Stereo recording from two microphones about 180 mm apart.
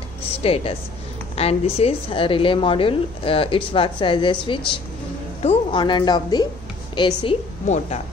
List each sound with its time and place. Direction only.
0.4 s a woman's voice: 30° left (ahead or behind)
7.6 s speech: 40° left (ahead or behind)